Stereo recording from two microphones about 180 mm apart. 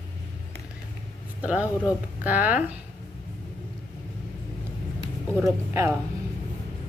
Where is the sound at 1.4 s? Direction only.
10° right (ahead or behind).